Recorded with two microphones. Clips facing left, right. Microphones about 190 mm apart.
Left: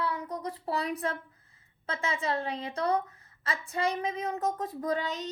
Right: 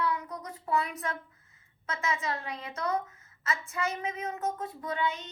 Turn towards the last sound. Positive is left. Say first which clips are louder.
# left 2 dB
turn(degrees=40)  # may be behind; listen again after turning